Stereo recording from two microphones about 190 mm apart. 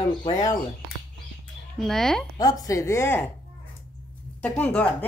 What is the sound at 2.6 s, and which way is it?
Speech, 15° left (ahead or behind).